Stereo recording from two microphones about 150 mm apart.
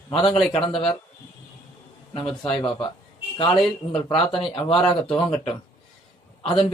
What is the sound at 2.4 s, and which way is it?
Speech, 35° left (ahead or behind).